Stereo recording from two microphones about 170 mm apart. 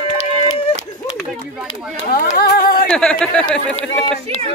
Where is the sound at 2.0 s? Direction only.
60° left (ahead or behind).